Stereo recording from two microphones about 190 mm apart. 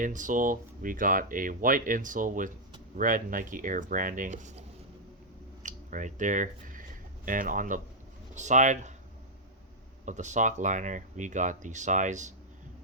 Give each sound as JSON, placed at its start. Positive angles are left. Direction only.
{"t": 0.0, "sound": "speech", "side_deg": -45}
{"t": 5.6, "sound": "speech", "side_deg": -40}
{"t": 10.1, "sound": "speech", "side_deg": -40}